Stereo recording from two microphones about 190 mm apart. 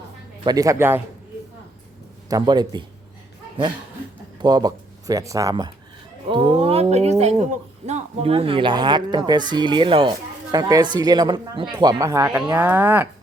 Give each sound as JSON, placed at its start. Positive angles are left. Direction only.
{"t": 0.4, "sound": "speech", "side_deg": -20}
{"t": 2.3, "sound": "speech", "side_deg": -20}
{"t": 4.4, "sound": "speech", "side_deg": -20}